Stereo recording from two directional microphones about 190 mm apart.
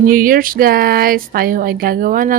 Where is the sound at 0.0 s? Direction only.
45° right (ahead or behind).